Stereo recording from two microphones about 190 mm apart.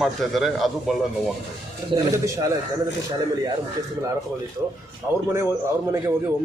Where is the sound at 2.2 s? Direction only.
15° right (ahead or behind).